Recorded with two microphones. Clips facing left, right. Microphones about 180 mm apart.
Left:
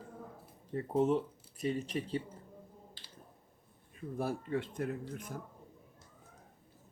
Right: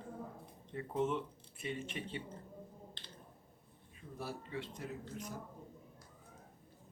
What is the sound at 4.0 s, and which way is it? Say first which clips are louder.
Speech: left 8 dB; 50° left (ahead or behind).